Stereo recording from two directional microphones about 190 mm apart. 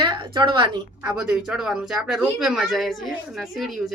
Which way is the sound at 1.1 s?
5° right (ahead or behind).